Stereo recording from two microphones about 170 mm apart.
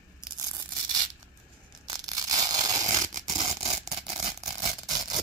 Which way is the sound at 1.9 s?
20° right (ahead or behind).